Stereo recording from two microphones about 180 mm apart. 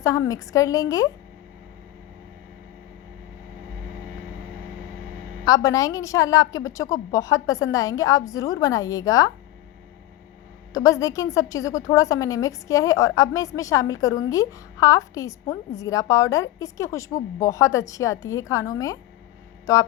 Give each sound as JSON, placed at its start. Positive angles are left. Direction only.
{"t": 0.0, "sound": "a woman's voice", "side_deg": 20}
{"t": 5.5, "sound": "a woman's voice", "side_deg": 20}
{"t": 10.8, "sound": "a woman's voice", "side_deg": 20}